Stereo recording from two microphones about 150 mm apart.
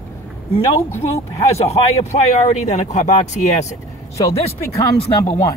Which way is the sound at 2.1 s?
50° left (ahead or behind).